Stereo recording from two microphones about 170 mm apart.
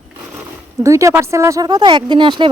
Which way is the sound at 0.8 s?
20° right (ahead or behind).